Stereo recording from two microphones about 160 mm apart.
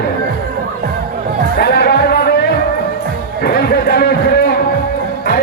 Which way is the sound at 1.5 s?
80° left.